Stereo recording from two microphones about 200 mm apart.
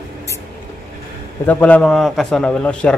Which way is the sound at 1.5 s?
10° left (ahead or behind).